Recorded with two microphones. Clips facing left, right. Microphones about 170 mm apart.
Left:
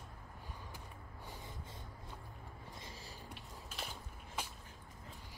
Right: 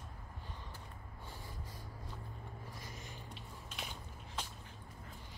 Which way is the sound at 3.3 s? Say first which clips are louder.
Even; centre (ahead or behind).